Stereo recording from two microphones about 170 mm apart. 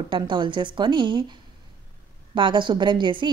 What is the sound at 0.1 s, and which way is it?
A woman's voice, 30° right (ahead or behind).